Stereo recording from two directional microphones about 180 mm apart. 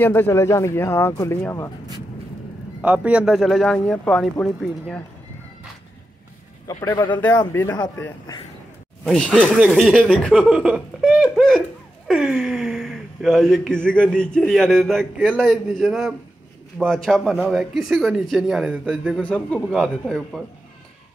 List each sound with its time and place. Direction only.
0.0 s speech: 10° left (ahead or behind)
2.8 s speech: 5° right (ahead or behind)
7.2 s speech: 15° left (ahead or behind)
9.0 s speech: centre (ahead or behind)
19.2 s speech: 5° left (ahead or behind)